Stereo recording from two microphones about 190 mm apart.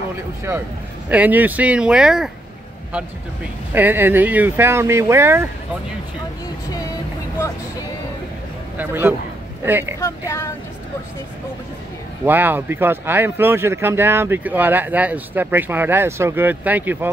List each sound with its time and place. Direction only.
1.0 s speech: 10° right (ahead or behind)
3.7 s speech: 10° right (ahead or behind)
8.7 s speech: 10° right (ahead or behind)
9.9 s speech: 15° left (ahead or behind)
12.3 s speech: 10° right (ahead or behind)